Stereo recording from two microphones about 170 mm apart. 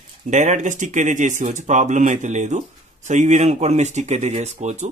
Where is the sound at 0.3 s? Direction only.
45° right (ahead or behind).